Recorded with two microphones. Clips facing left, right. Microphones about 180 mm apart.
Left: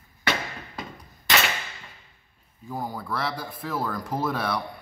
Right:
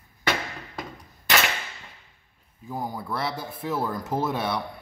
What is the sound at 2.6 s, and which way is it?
Speech, 20° right (ahead or behind).